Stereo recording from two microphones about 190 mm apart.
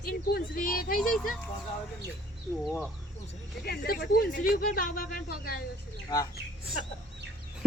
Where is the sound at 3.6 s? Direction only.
60° left (ahead or behind).